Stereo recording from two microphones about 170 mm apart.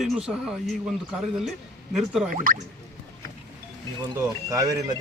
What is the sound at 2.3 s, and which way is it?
Speech, 55° right (ahead or behind).